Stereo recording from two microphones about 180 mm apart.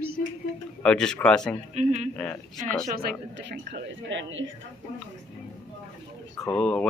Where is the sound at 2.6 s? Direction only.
50° right (ahead or behind); by 4.5 s 90° right.